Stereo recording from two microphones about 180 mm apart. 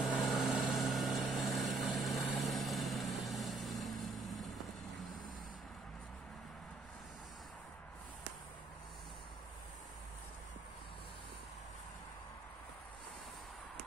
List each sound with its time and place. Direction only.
0.1 s vehicle: centre (ahead or behind)